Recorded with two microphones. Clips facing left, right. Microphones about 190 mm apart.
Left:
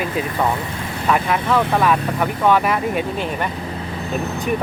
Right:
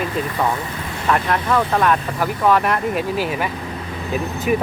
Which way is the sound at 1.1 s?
5° left (ahead or behind).